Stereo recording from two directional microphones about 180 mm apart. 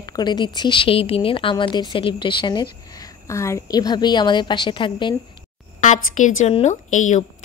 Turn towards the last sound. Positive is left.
turn(degrees=40)  # may be behind; listen again after turning